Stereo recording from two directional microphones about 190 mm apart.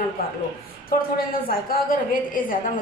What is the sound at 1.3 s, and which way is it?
A woman's voice, 50° left (ahead or behind).